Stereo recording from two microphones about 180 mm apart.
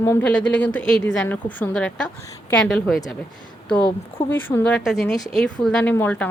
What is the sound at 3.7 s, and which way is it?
Speech, 25° left (ahead or behind).